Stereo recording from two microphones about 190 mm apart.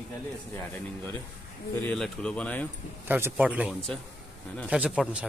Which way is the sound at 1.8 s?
5° left (ahead or behind).